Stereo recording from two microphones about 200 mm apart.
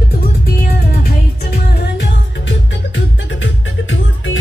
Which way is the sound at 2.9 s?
70° left (ahead or behind).